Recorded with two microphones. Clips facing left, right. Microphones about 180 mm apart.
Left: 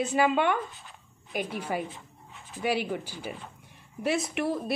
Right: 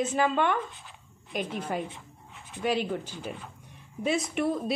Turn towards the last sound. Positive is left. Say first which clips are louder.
# right 1 dB
turn(degrees=0)  # may be behind; listen again after turning